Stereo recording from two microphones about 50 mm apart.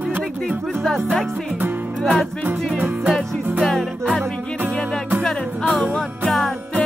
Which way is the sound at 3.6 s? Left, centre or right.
Centre.